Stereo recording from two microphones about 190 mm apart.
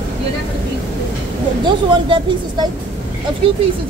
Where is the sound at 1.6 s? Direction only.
25° right (ahead or behind).